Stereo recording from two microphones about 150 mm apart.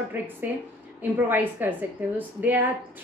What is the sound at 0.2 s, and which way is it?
A woman's voice, 15° right (ahead or behind).